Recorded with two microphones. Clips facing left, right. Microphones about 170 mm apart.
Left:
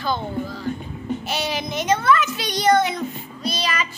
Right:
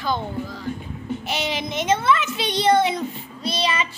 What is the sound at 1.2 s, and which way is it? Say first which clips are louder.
A child's voice: right 2 dB; 20° right (ahead or behind).